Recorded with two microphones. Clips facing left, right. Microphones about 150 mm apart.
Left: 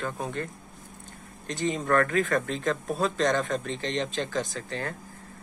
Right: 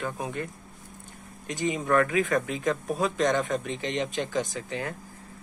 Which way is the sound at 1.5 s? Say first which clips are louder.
Even; 15° right (ahead or behind).